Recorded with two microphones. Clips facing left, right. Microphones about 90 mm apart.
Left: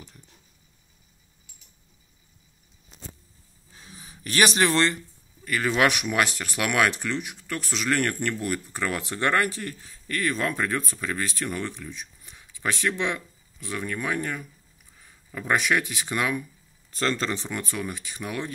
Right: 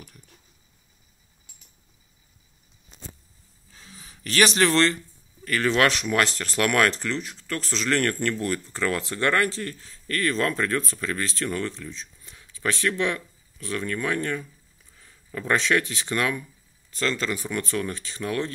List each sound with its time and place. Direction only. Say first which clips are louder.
3.7 s a sound: left 1 dB; 20° left (ahead or behind)
5.4 s speech: right 1 dB; 10° left (ahead or behind)
16.9 s speech: even; 45° left (ahead or behind)
17.3 s speech: right 3 dB; 25° left (ahead or behind)